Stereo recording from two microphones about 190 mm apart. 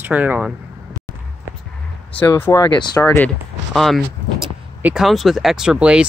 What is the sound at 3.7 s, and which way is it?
Speech, centre (ahead or behind).